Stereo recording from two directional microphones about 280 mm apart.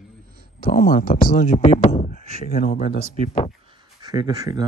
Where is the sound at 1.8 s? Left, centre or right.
Centre.